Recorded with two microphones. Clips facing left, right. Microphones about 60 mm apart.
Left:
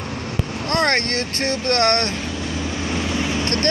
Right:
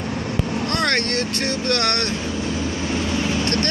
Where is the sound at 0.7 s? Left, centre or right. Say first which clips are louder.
Left 4 dB; left.